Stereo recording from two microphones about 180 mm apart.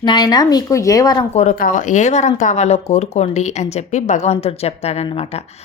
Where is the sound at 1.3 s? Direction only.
45° left (ahead or behind).